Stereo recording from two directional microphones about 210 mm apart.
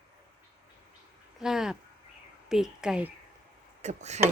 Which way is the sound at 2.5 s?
Centre (ahead or behind).